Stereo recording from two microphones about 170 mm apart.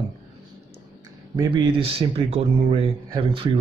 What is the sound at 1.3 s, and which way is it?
Speech, 30° right (ahead or behind).